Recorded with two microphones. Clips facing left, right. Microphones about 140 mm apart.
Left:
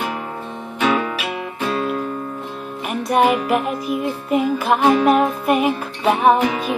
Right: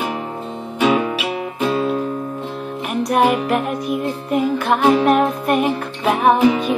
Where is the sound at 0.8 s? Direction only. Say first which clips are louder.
Right 3 dB; 20° right (ahead or behind).